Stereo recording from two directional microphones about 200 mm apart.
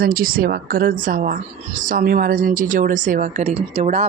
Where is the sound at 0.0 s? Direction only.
45° right (ahead or behind).